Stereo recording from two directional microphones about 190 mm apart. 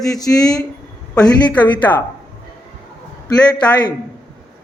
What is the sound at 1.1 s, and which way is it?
Speech, 5° left (ahead or behind).